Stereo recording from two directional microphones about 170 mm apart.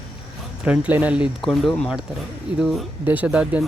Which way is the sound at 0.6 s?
5° right (ahead or behind).